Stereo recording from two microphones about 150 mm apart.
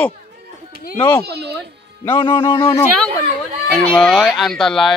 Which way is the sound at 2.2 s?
35° left (ahead or behind).